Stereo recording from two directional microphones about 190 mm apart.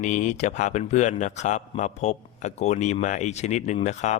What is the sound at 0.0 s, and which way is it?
A man's voice, 40° left (ahead or behind).